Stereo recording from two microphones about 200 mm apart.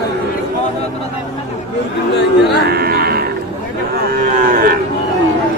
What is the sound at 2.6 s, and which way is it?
Cattle, 50° right (ahead or behind).